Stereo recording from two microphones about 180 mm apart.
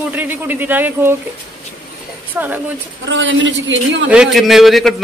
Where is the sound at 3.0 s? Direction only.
90° right.